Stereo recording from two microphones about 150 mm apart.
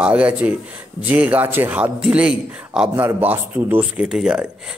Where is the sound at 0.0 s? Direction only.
10° right (ahead or behind).